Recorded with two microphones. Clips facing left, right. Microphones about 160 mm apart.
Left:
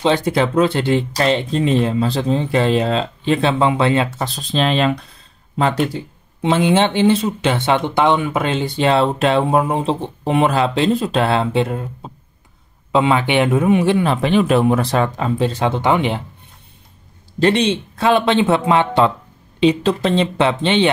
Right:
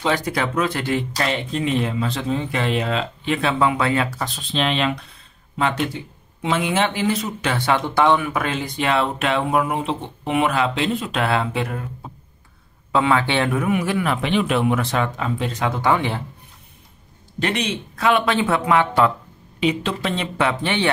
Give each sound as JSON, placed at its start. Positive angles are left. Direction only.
{"t": 0.0, "sound": "speech", "side_deg": 25}
{"t": 17.4, "sound": "speech", "side_deg": 30}